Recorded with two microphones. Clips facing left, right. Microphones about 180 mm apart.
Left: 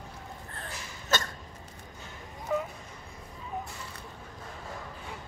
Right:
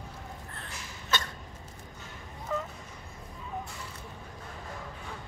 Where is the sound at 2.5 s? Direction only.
15° left (ahead or behind).